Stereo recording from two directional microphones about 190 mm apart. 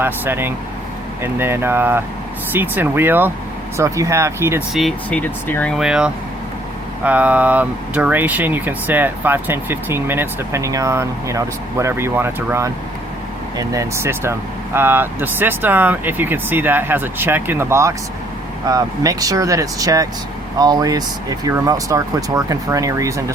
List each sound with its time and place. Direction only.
0.0 s speech: 10° right (ahead or behind)
4.7 s speech: centre (ahead or behind); by 23.2 s 15° right (ahead or behind)